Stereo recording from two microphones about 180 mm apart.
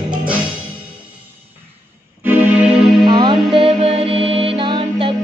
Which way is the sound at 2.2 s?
10° right (ahead or behind).